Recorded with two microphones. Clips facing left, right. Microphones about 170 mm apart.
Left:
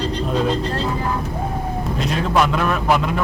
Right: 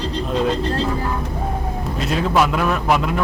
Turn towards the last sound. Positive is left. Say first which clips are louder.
# even
turn(degrees=0)  # may be behind; listen again after turning